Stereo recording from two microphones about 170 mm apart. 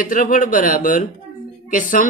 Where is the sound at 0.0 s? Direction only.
50° left (ahead or behind).